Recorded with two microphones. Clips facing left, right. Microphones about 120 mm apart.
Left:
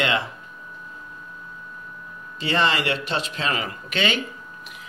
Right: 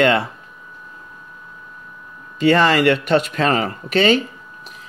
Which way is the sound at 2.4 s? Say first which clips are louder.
Right 8 dB; 50° right (ahead or behind).